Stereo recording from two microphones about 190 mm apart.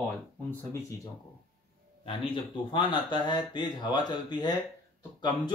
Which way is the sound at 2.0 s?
25° left (ahead or behind).